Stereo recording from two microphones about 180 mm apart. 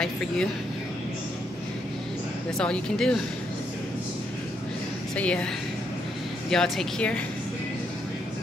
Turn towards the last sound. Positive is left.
turn(degrees=0)  # may be behind; listen again after turning